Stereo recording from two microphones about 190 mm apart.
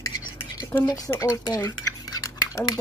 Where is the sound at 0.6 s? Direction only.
10° left (ahead or behind).